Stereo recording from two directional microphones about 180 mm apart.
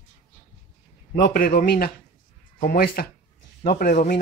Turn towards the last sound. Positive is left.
turn(degrees=50)  # may be behind; listen again after turning